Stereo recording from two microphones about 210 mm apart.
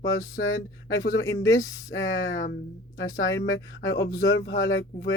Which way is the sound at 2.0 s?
65° left (ahead or behind).